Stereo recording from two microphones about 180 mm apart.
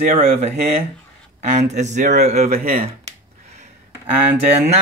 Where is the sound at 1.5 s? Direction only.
40° right (ahead or behind).